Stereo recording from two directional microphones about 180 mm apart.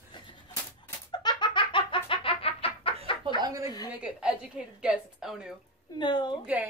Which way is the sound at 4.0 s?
5° right (ahead or behind).